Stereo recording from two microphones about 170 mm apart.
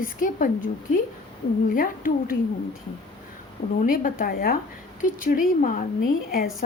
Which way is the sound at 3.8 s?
55° left (ahead or behind).